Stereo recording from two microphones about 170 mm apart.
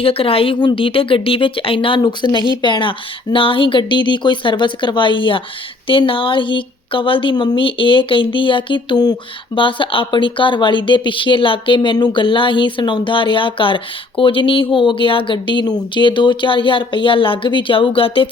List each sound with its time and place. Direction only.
0.0 s a woman's voice: 35° left (ahead or behind)